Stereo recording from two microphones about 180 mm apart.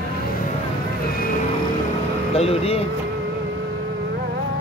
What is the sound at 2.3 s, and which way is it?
Speech, 35° left (ahead or behind).